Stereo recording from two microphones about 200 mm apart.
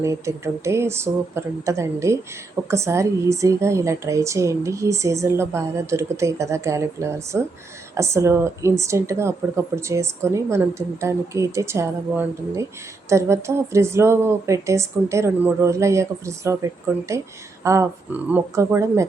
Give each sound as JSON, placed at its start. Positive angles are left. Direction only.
{"t": 0.0, "sound": "a woman's voice", "side_deg": -15}